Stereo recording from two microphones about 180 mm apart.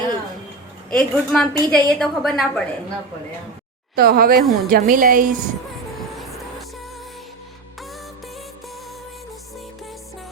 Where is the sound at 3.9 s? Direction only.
55° right (ahead or behind).